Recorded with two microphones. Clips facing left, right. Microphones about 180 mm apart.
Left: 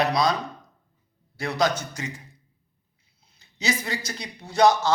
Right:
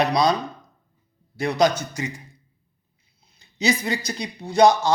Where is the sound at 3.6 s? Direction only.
15° right (ahead or behind).